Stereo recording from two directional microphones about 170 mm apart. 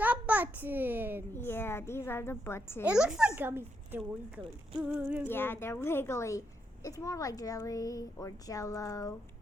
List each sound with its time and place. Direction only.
0.0 s a sound: 10° right (ahead or behind)
1.3 s a woman's voice: 15° left (ahead or behind)
2.8 s a child's voice: 5° right (ahead or behind)
5.3 s a woman's voice: 15° left (ahead or behind)